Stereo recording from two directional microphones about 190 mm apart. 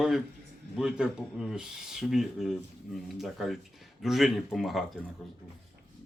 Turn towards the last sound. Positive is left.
turn(degrees=0)  # may be behind; listen again after turning